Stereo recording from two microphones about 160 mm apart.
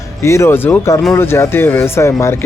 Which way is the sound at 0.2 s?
15° left (ahead or behind).